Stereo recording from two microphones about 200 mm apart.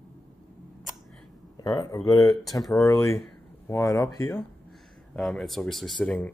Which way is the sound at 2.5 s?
15° left (ahead or behind).